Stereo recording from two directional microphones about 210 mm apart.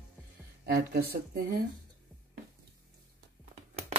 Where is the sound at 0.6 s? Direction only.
50° right (ahead or behind).